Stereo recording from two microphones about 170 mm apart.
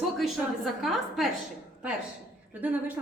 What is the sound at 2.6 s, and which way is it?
Speech, 10° right (ahead or behind).